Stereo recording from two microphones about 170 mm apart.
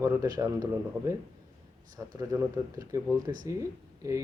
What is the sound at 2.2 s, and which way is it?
A man's voice, 20° right (ahead or behind).